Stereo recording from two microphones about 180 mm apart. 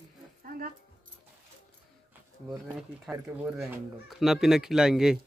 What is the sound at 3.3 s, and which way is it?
Speech, 15° right (ahead or behind).